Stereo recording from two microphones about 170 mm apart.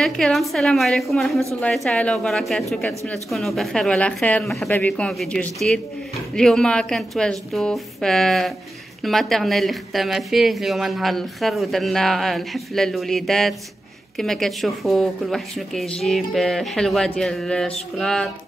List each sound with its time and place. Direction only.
0.0 s speech: centre (ahead or behind)